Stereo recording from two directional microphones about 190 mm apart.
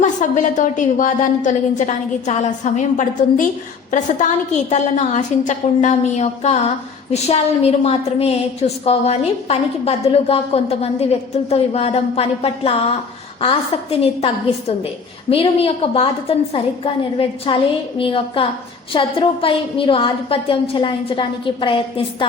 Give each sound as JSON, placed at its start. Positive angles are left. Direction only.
{"t": 0.0, "sound": "a woman's voice", "side_deg": 40}
{"t": 15.3, "sound": "a woman's voice", "side_deg": 30}